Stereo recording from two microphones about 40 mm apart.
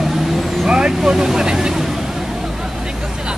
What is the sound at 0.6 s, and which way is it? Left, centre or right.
Speech, right.